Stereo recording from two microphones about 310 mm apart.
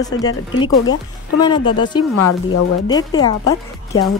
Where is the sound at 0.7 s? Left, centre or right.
Left.